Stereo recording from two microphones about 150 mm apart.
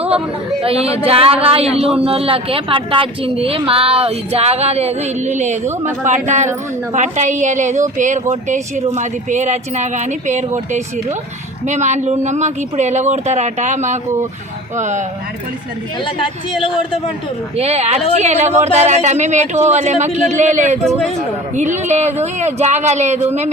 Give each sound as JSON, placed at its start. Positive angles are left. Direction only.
{"t": 0.6, "sound": "a woman's voice", "side_deg": -40}
{"t": 17.6, "sound": "a woman's voice", "side_deg": -45}